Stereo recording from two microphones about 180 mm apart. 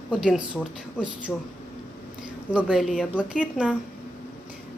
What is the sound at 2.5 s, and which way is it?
Speech, 5° right (ahead or behind).